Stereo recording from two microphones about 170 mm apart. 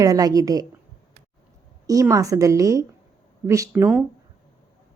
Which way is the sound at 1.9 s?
20° right (ahead or behind).